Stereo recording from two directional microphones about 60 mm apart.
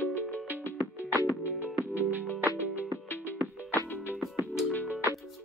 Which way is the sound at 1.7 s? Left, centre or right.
Right.